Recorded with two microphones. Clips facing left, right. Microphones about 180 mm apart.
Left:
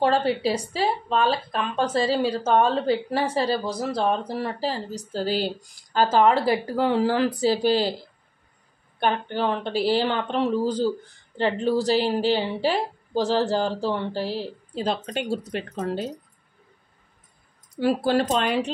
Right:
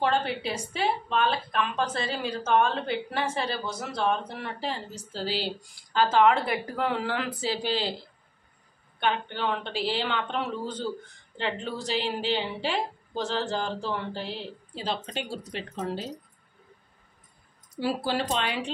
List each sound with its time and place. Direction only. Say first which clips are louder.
0.0 s a woman's voice: left 6 dB; 35° left (ahead or behind)
9.4 s a woman's voice: left 9 dB; 40° left (ahead or behind)
17.7 s speech: left 7 dB; 50° left (ahead or behind)